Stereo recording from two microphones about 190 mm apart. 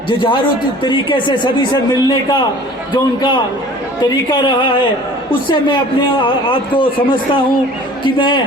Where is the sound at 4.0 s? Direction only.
25° left (ahead or behind).